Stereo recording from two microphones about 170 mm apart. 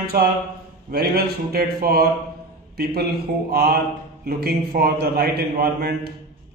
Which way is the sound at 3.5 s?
65° right (ahead or behind).